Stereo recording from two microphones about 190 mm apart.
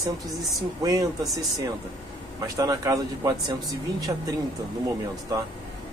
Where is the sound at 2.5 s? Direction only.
15° right (ahead or behind).